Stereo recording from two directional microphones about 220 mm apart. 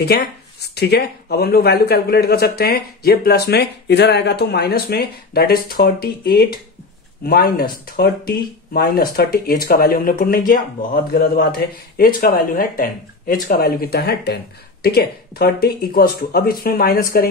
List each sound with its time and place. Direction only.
0.0 s speech: 45° left (ahead or behind)